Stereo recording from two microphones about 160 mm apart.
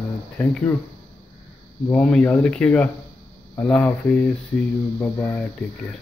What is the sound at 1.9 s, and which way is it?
Speech, 5° left (ahead or behind).